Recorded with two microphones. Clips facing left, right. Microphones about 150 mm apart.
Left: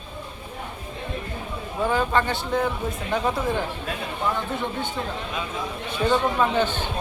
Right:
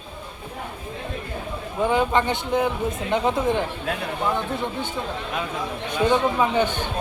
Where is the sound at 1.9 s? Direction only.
20° right (ahead or behind).